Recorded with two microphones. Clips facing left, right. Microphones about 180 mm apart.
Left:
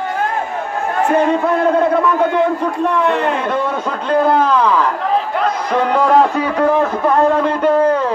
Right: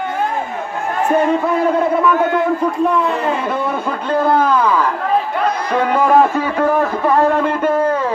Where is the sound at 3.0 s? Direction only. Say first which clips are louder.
Left 3 dB; 70° left (ahead or behind).